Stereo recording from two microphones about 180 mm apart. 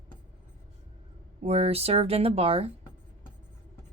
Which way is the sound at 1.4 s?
35° right (ahead or behind).